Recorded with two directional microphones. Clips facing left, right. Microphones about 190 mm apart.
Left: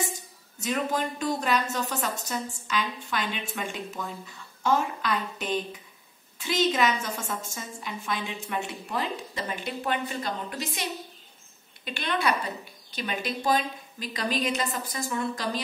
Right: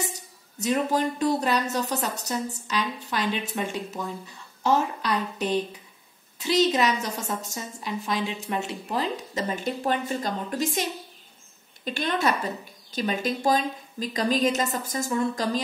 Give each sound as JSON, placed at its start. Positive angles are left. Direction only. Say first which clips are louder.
{"t": 0.6, "sound": "a woman's voice", "louder": "right 4 dB", "side_deg": -35}